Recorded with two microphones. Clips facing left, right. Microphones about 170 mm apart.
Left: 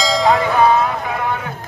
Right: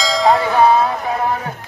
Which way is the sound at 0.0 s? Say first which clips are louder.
Right 1 dB; centre (ahead or behind).